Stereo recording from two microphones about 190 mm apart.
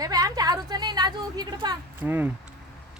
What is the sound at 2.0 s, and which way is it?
Speech, 10° right (ahead or behind).